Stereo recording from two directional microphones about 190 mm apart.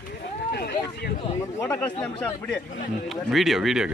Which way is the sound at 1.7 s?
10° left (ahead or behind).